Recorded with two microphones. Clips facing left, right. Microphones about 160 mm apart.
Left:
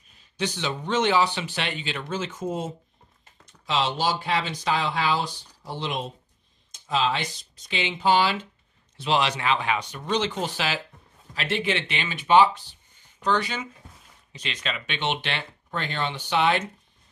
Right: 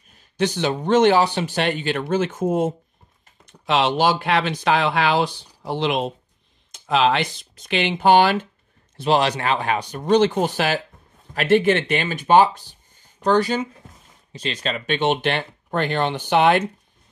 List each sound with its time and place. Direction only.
0.1 s speech: 50° right (ahead or behind); by 6.1 s 80° right
6.7 s speech: 70° right (ahead or behind)